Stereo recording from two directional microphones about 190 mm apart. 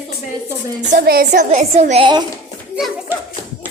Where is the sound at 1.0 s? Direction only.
55° right (ahead or behind).